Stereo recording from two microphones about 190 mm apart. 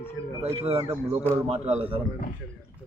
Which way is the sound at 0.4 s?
30° right (ahead or behind).